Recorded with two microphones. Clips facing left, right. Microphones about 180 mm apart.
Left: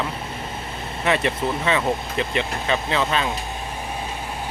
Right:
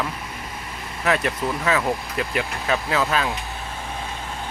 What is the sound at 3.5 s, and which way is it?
Vehicle, 15° left (ahead or behind).